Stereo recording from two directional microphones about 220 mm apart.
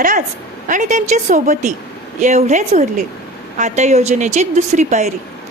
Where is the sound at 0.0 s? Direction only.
35° right (ahead or behind).